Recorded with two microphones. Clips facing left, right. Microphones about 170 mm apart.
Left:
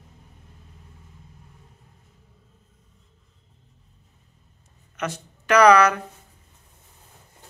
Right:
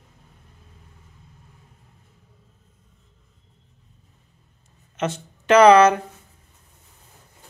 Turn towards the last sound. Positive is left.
turn(degrees=-25)  # may be behind; listen again after turning